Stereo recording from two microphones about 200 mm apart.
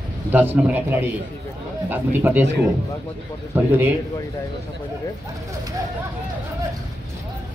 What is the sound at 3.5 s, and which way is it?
Speech, 10° right (ahead or behind).